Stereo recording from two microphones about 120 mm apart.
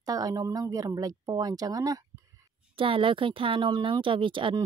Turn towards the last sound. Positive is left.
turn(degrees=-45)  # may be behind; listen again after turning